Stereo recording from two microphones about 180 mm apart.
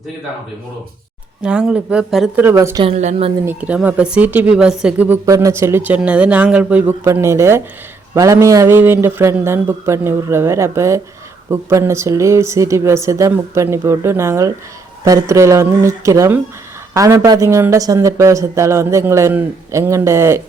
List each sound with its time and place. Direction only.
1.4 s speech: 5° right (ahead or behind)
2.4 s speech: 15° right (ahead or behind)
2.8 s a woman's voice: 35° right (ahead or behind)
3.4 s speech: 10° right (ahead or behind)